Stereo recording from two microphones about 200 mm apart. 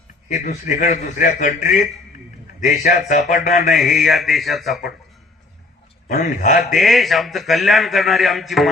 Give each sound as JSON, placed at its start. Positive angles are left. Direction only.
{"t": 0.3, "sound": "a man's voice", "side_deg": 40}
{"t": 3.7, "sound": "a man's voice", "side_deg": 0}
{"t": 6.1, "sound": "a man's voice", "side_deg": 40}
{"t": 6.7, "sound": "a man's voice", "side_deg": 0}